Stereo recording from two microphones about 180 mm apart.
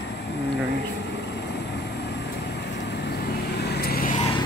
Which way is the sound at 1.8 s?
70° left (ahead or behind).